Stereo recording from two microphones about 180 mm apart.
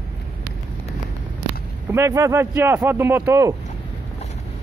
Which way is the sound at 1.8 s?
15° right (ahead or behind).